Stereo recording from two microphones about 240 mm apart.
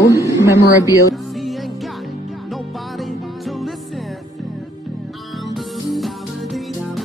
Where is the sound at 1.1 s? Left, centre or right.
Centre.